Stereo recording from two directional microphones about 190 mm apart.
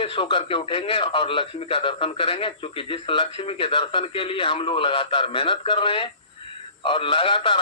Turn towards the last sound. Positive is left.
turn(degrees=25)  # may be behind; listen again after turning